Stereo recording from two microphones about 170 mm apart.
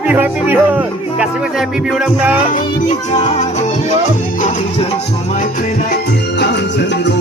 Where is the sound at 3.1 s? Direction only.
40° left (ahead or behind).